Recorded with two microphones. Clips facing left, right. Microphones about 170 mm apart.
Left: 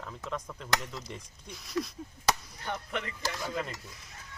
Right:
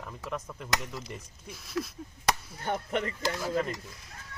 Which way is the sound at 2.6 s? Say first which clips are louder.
Right 5 dB; 45° right (ahead or behind).